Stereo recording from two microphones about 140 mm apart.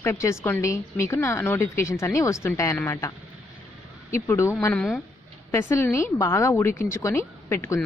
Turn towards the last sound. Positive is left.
turn(degrees=20)  # may be behind; listen again after turning